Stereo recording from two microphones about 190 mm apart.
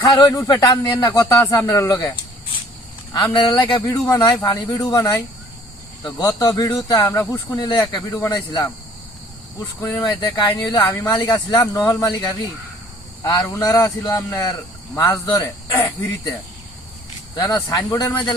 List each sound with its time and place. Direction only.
0.0 s speech: 20° left (ahead or behind)
3.3 s speech: 25° left (ahead or behind)
10.0 s speech: 20° left (ahead or behind)
17.3 s speech: 20° left (ahead or behind)